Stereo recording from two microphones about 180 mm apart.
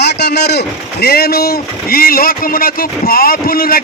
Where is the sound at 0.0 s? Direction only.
65° left (ahead or behind).